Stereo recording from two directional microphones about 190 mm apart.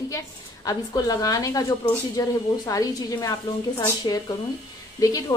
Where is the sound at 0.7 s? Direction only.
20° left (ahead or behind).